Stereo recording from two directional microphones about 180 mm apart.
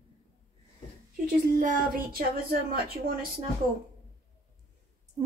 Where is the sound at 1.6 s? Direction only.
45° right (ahead or behind).